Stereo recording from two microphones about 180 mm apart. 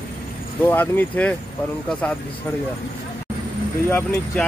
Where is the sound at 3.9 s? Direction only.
10° left (ahead or behind).